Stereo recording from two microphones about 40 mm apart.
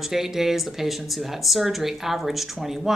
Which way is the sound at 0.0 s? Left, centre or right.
Centre.